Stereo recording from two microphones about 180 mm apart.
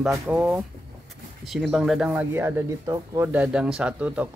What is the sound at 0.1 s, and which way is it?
Speech, 10° right (ahead or behind).